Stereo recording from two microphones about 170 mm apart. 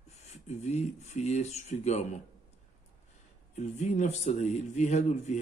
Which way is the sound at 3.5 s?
45° left (ahead or behind).